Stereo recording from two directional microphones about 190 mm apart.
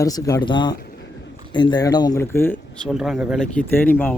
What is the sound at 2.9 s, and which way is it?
Speech, centre (ahead or behind).